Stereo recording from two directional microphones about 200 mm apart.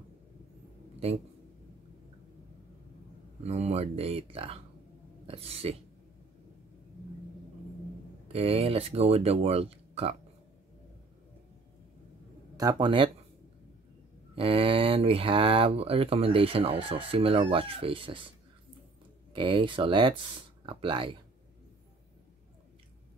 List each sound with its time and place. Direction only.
3.4 s speech: 30° right (ahead or behind)
8.3 s speech: 30° right (ahead or behind)
12.5 s speech: 20° right (ahead or behind)
14.3 s speech: 25° right (ahead or behind)
19.3 s speech: 25° right (ahead or behind)